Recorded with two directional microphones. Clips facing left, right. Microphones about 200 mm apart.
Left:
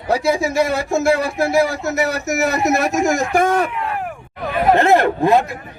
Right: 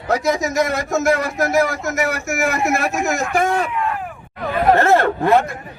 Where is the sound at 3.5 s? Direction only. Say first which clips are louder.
Left 1 dB; 55° left (ahead or behind).